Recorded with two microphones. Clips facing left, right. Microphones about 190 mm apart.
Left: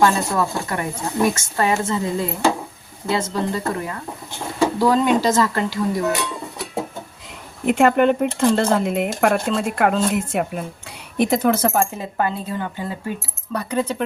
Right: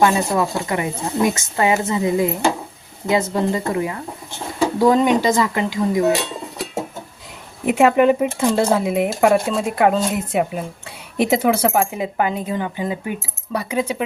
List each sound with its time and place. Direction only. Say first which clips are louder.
0.0 s speech: right 1 dB; 15° right (ahead or behind)
7.6 s speech: right 1 dB; 5° right (ahead or behind)